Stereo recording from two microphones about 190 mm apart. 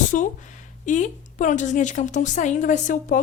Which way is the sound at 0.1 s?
45° left (ahead or behind).